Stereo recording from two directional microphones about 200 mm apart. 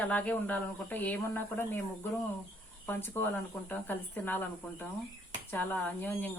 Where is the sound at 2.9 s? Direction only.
10° left (ahead or behind).